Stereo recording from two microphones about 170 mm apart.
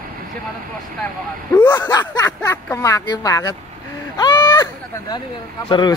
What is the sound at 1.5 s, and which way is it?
Speech, 10° left (ahead or behind).